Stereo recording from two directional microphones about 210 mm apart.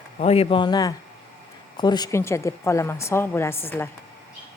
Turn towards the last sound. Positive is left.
turn(degrees=10)  # may be behind; listen again after turning